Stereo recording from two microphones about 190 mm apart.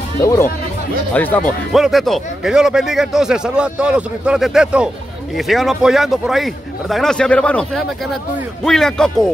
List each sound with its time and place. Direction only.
0.2 s speech: 15° left (ahead or behind)
1.7 s speech: centre (ahead or behind)